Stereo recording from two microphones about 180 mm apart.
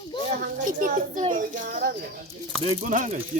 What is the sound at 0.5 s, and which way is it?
Speech, 45° right (ahead or behind).